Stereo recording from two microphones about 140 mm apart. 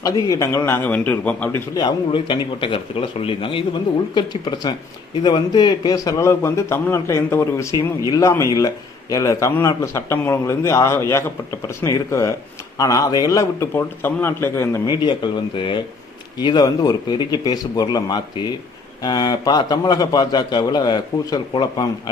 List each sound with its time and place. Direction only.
0.0 s a man's voice: 25° left (ahead or behind)
1.7 s a man's voice: 35° left (ahead or behind); by 14.8 s 20° left (ahead or behind)
14.8 s a man's voice: 30° left (ahead or behind)